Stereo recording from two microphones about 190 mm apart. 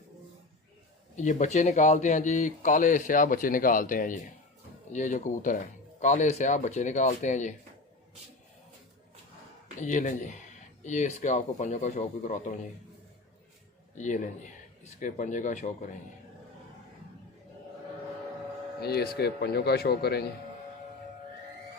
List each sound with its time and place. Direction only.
1.1 s speech: 40° left (ahead or behind)
9.8 s speech: 40° left (ahead or behind)
14.0 s speech: 40° left (ahead or behind)
18.8 s speech: 55° left (ahead or behind)